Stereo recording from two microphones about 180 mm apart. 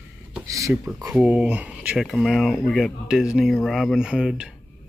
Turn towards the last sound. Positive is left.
turn(degrees=-5)  # may be behind; listen again after turning